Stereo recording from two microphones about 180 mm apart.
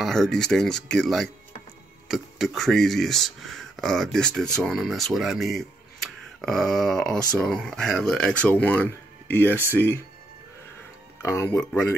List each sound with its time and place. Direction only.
0.0 s speech: centre (ahead or behind)
11.2 s speech: 15° left (ahead or behind)